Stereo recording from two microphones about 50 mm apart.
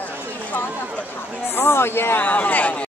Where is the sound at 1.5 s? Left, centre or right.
Left.